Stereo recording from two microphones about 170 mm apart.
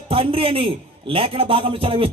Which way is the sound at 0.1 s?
35° right (ahead or behind).